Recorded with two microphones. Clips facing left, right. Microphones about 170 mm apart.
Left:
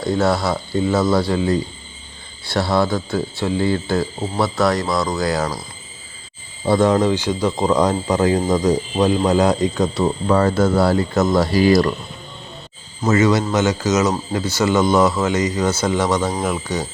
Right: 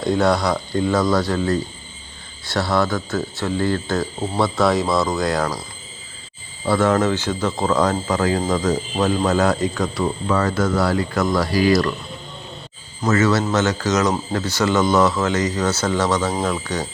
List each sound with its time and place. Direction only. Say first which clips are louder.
0.0 s speech: even; centre (ahead or behind)
6.7 s speech: left 2 dB; 15° left (ahead or behind)
13.0 s speech: left 2 dB; 15° left (ahead or behind)